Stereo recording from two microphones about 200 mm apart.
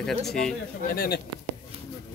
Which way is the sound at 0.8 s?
50° left (ahead or behind).